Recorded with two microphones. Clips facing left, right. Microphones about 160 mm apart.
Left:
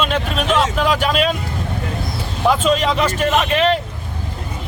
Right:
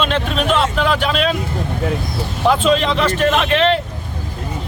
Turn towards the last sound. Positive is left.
turn(degrees=5)  # may be behind; listen again after turning